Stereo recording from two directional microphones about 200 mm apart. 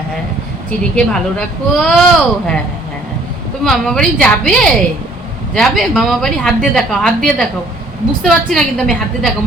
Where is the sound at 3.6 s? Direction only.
Centre (ahead or behind).